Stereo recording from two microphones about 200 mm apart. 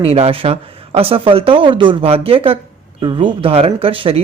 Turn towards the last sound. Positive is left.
turn(degrees=-25)  # may be behind; listen again after turning